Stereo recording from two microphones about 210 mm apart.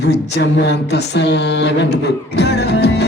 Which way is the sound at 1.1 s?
55° left (ahead or behind).